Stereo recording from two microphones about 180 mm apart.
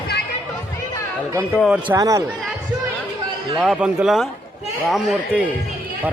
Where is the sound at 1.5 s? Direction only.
Centre (ahead or behind).